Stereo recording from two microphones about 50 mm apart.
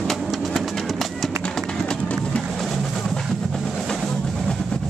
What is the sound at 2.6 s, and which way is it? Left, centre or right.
Music, centre.